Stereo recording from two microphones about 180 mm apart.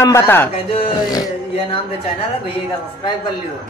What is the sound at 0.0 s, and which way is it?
Speech, 15° left (ahead or behind).